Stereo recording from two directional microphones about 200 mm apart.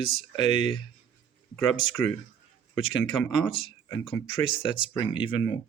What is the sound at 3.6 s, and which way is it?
Speech, 20° left (ahead or behind).